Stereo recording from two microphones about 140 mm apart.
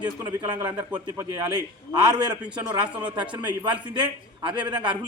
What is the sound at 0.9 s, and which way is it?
Speech, 25° right (ahead or behind).